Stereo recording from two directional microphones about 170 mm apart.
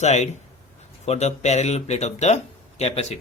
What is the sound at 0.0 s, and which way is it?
Speech, 40° left (ahead or behind).